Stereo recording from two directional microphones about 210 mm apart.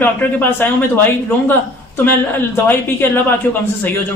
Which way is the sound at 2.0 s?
10° left (ahead or behind).